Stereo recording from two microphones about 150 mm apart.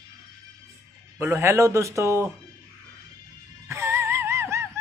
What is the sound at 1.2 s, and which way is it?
Speech, 20° right (ahead or behind).